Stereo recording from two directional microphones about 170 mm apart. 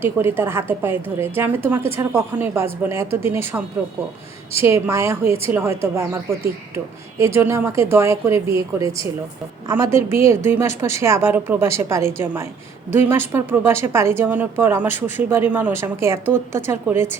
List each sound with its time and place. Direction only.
0.0 s a woman's voice: 15° right (ahead or behind)
7.3 s a woman's voice: 15° right (ahead or behind)